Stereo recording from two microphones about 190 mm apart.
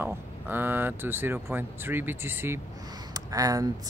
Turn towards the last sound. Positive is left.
turn(degrees=-20)  # may be behind; listen again after turning